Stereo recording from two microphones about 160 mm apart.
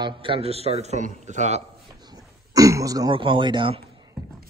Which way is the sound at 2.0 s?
20° right (ahead or behind).